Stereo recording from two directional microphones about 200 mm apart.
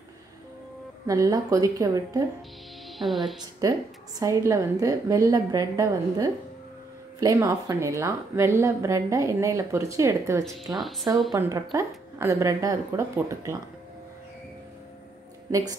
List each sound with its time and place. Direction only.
1.0 s a woman's voice: 15° right (ahead or behind)
3.0 s a woman's voice: centre (ahead or behind)
3.6 s a woman's voice: 15° right (ahead or behind)
10.8 s a woman's voice: centre (ahead or behind)
11.3 s a woman's voice: 15° right (ahead or behind)